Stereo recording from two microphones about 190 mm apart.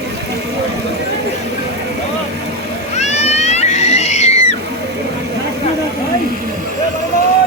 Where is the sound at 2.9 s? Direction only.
35° left (ahead or behind).